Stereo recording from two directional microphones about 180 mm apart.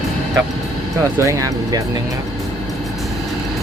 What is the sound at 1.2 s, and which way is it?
Speech, 15° right (ahead or behind).